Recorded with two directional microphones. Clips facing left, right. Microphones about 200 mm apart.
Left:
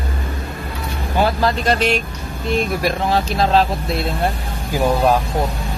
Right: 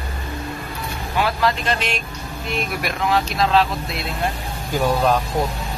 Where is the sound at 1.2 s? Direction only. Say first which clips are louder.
Left 3 dB; 35° left (ahead or behind).